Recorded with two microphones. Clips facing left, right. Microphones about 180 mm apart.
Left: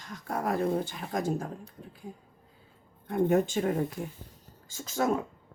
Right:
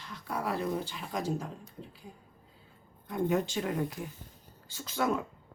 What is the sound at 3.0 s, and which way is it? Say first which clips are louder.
Speech: left 5 dB; 50° left (ahead or behind).